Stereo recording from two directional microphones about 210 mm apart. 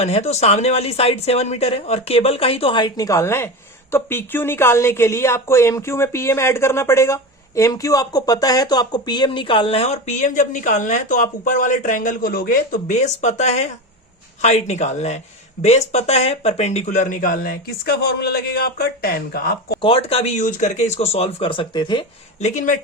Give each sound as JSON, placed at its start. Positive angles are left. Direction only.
{"t": 0.0, "sound": "a woman's voice", "side_deg": 30}
{"t": 19.8, "sound": "a woman's voice", "side_deg": 25}
{"t": 22.4, "sound": "speech", "side_deg": 35}